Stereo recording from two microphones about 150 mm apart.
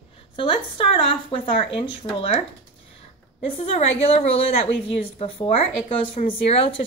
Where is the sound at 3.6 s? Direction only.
45° left (ahead or behind).